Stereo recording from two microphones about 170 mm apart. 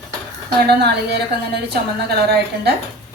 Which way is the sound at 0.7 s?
75° right (ahead or behind).